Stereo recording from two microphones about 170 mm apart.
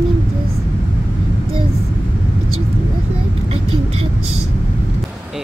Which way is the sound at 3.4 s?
35° right (ahead or behind).